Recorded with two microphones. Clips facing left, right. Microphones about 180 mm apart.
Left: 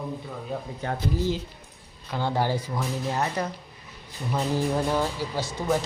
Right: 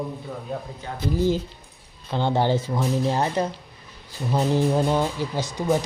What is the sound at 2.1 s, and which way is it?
Speech, 25° right (ahead or behind).